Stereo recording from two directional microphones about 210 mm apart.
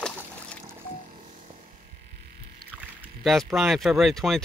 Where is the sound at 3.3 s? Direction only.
Centre (ahead or behind).